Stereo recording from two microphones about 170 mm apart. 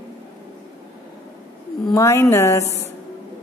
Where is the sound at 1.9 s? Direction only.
15° left (ahead or behind).